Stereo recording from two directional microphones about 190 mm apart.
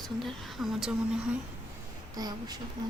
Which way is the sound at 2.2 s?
20° right (ahead or behind).